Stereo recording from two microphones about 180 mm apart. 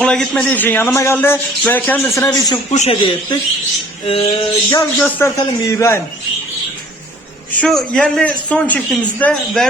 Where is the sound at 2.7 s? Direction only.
35° left (ahead or behind).